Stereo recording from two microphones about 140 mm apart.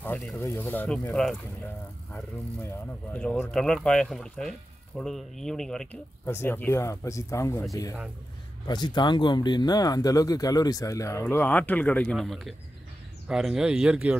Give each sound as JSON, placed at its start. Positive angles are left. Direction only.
{"t": 0.0, "sound": "speech", "side_deg": 5}
{"t": 6.2, "sound": "speech", "side_deg": 15}
{"t": 8.6, "sound": "speech", "side_deg": 30}